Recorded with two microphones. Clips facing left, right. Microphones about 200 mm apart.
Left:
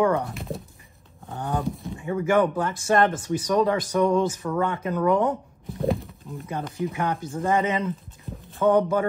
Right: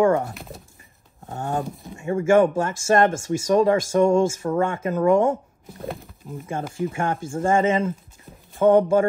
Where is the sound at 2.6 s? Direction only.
45° right (ahead or behind).